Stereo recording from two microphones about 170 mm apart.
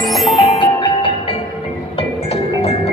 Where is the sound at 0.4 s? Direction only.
30° left (ahead or behind).